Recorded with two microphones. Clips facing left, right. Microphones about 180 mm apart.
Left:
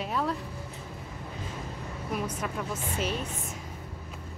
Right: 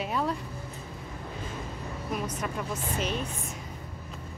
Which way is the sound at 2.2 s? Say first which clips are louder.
Even; 5° left (ahead or behind).